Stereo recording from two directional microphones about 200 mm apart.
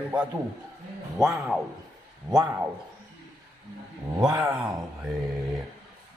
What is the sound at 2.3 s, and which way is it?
Speech, 20° right (ahead or behind).